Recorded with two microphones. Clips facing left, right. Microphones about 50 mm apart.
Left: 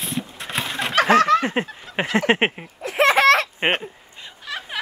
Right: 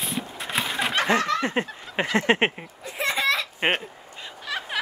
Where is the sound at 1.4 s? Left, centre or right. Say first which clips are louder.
Left 2 dB; left.